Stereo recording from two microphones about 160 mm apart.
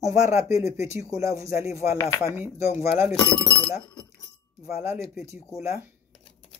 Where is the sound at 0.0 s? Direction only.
20° right (ahead or behind).